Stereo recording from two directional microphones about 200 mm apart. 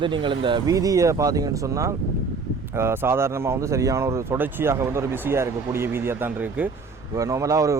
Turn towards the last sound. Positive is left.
turn(degrees=-15)  # may be behind; listen again after turning